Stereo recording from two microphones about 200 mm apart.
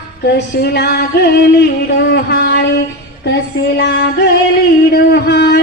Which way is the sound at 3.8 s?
55° left (ahead or behind).